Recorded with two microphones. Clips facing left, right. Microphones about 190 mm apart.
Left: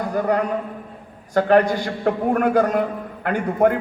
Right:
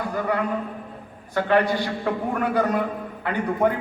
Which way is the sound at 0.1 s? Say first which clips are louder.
Left 5 dB; 45° left (ahead or behind).